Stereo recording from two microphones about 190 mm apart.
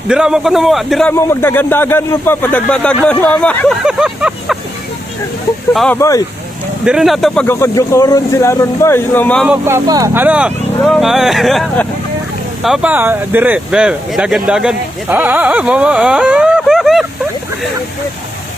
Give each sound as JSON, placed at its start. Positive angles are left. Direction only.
{"t": 0.1, "sound": "speech", "side_deg": -5}
{"t": 1.1, "sound": "speech", "side_deg": 10}
{"t": 3.8, "sound": "vehicle", "side_deg": -5}
{"t": 5.7, "sound": "speech", "side_deg": 5}
{"t": 6.0, "sound": "speech", "side_deg": 15}
{"t": 6.8, "sound": "speech", "side_deg": 0}
{"t": 7.4, "sound": "speech", "side_deg": 15}
{"t": 9.5, "sound": "speech", "side_deg": -15}